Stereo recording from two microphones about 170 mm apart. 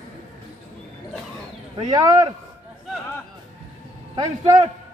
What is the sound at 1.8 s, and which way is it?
Speech, 25° right (ahead or behind).